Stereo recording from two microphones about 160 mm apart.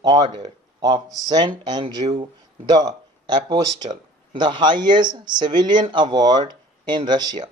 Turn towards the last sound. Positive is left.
turn(degrees=-25)  # may be behind; listen again after turning